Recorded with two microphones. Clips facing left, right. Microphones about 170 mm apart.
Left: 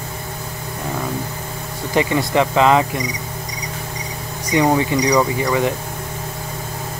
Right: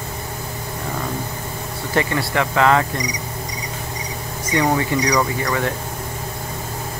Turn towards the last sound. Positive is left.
turn(degrees=10)  # may be behind; listen again after turning